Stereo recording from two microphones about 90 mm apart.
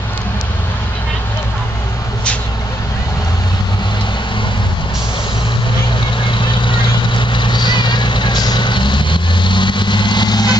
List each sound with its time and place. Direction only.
6.3 s vehicle: 65° left (ahead or behind)